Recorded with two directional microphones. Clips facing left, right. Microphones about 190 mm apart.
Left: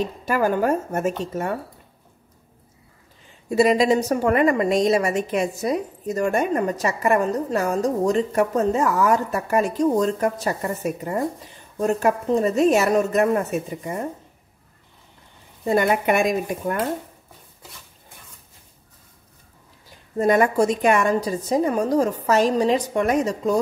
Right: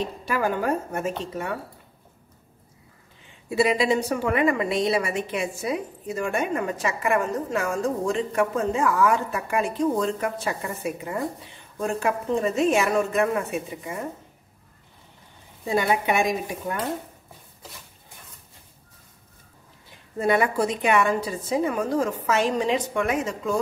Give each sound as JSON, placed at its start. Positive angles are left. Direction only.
{"t": 0.2, "sound": "speech", "side_deg": 45}
{"t": 3.4, "sound": "a woman's voice", "side_deg": 40}
{"t": 15.6, "sound": "speech", "side_deg": 50}
{"t": 19.9, "sound": "a woman's voice", "side_deg": 40}